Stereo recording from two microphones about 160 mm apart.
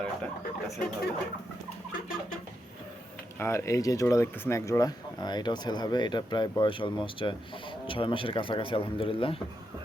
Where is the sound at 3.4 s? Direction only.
15° left (ahead or behind); by 9.4 s 35° left (ahead or behind).